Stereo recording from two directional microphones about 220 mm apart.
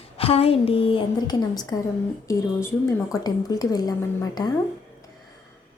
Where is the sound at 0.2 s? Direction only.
25° left (ahead or behind).